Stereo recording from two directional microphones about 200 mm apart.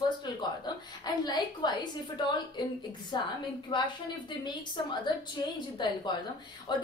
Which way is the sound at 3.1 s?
20° left (ahead or behind).